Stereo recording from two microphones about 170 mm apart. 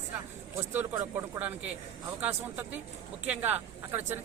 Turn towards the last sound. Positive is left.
turn(degrees=-10)  # may be behind; listen again after turning